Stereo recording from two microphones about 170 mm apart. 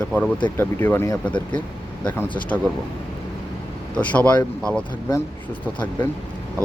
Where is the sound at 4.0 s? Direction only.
10° left (ahead or behind).